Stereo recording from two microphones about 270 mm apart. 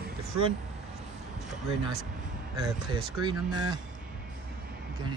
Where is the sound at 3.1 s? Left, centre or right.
Centre.